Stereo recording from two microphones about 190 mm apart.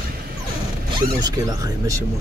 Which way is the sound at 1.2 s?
20° right (ahead or behind).